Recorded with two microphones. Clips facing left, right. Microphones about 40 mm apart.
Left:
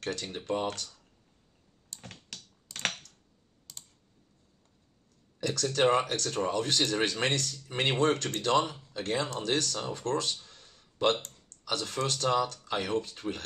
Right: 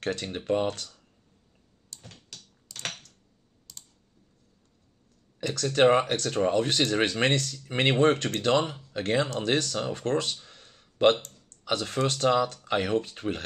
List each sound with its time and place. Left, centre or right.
0.0 s speech: right
1.9 s computer keyboard: left
2.2 s typing: left
5.4 s speech: right